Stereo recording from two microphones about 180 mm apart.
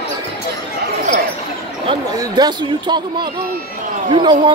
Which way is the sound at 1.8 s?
20° right (ahead or behind).